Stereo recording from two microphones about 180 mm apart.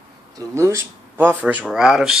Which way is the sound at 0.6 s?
15° right (ahead or behind).